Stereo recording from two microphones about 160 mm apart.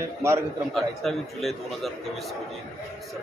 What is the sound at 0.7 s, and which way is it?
A man's voice, centre (ahead or behind).